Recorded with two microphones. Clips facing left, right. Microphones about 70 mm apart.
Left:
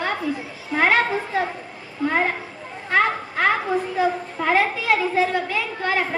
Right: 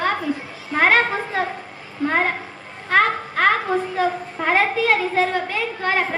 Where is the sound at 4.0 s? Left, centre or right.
Right.